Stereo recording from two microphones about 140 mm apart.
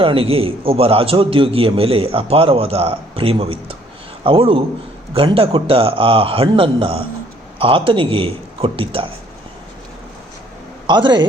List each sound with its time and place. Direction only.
0.0 s a man's voice: 40° right (ahead or behind)
10.8 s a man's voice: 35° right (ahead or behind)